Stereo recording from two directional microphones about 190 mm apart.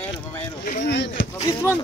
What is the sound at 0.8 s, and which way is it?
Speech, 65° left (ahead or behind).